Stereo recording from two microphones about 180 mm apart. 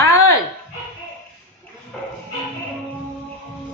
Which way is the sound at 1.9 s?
5° left (ahead or behind).